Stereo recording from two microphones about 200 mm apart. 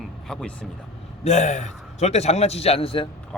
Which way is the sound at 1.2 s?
35° left (ahead or behind).